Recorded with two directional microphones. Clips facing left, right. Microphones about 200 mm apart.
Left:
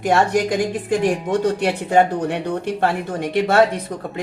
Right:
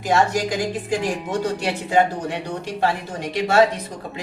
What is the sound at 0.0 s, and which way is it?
Speech, 55° left (ahead or behind).